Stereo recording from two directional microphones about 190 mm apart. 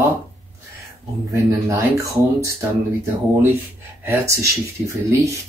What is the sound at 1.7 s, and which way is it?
Speech, 15° right (ahead or behind).